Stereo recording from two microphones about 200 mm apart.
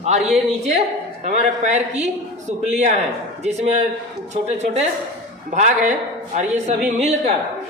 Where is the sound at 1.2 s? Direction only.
35° right (ahead or behind).